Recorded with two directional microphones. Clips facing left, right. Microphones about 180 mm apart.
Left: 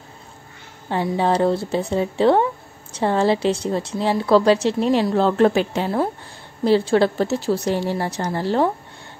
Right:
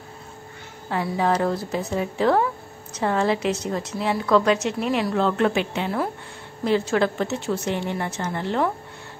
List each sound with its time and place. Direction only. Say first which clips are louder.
0.8 s a woman's voice: left 3 dB; 30° left (ahead or behind)